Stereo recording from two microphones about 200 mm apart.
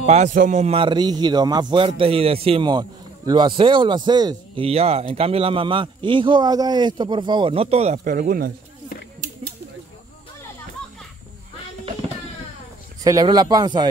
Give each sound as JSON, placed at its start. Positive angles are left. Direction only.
{"t": 0.0, "sound": "a man's voice", "side_deg": -35}
{"t": 8.2, "sound": "speech", "side_deg": -45}
{"t": 13.0, "sound": "a man's voice", "side_deg": -20}